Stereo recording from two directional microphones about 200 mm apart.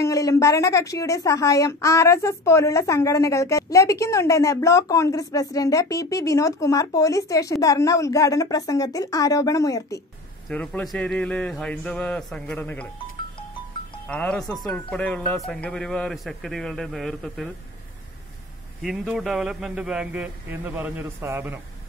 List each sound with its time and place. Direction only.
0.0 s a woman's voice: 15° left (ahead or behind)
10.5 s speech: 5° left (ahead or behind)
14.0 s speech: 5° left (ahead or behind)
18.8 s speech: centre (ahead or behind)